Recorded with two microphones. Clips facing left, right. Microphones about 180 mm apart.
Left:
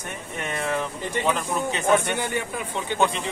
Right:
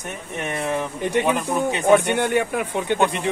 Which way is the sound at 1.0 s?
65° right (ahead or behind).